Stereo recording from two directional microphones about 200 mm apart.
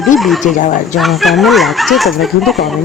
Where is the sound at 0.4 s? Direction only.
40° left (ahead or behind).